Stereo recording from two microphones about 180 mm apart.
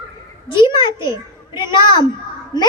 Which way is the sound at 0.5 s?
25° left (ahead or behind).